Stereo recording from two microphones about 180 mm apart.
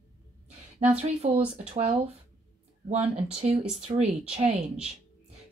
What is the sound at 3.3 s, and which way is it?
Speech, 35° right (ahead or behind).